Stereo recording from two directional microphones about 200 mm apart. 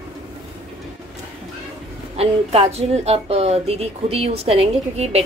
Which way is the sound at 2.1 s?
30° right (ahead or behind).